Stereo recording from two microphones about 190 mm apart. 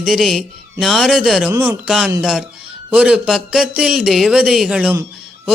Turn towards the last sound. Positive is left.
turn(degrees=-5)  # may be behind; listen again after turning